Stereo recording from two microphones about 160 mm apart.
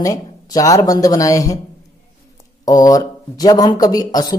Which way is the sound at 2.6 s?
25° left (ahead or behind).